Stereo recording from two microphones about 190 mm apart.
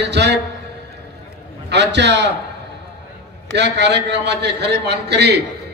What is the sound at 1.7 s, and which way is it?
Speech, 65° right (ahead or behind).